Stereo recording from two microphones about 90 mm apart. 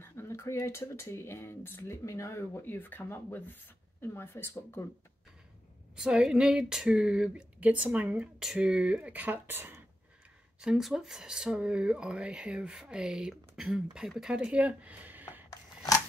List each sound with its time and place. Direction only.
0.0 s speech: 25° left (ahead or behind)
5.9 s speech: 5° right (ahead or behind)
8.4 s speech: 5° right (ahead or behind); by 9.8 s 25° right (ahead or behind)
10.6 s speech: 5° right (ahead or behind)